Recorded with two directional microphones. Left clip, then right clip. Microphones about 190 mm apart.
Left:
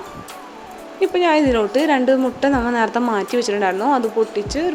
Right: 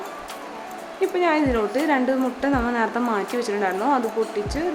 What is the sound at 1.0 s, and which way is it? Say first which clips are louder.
A woman's voice: left 5 dB; 25° left (ahead or behind).